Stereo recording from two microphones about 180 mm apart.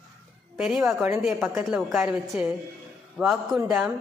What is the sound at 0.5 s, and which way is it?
A woman's voice, 5° right (ahead or behind).